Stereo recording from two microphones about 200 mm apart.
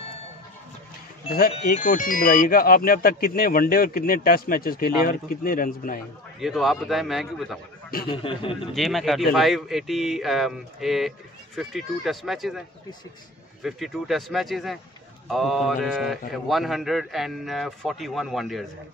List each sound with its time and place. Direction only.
1.5 s speech: 40° left (ahead or behind)
6.4 s speech: centre (ahead or behind)
8.1 s speech: 25° left (ahead or behind)
8.7 s speech: centre (ahead or behind)